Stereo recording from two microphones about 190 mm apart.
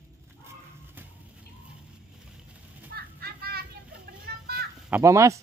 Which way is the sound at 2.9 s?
55° right (ahead or behind).